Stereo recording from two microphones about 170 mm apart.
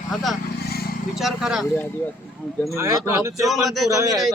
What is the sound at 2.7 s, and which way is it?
Speech, 15° right (ahead or behind).